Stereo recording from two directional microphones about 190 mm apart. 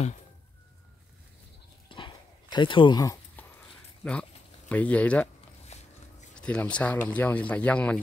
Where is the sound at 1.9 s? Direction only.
25° left (ahead or behind).